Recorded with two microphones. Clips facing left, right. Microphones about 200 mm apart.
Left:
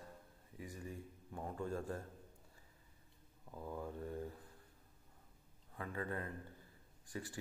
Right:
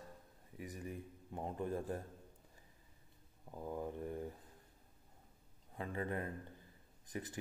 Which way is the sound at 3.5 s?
20° right (ahead or behind).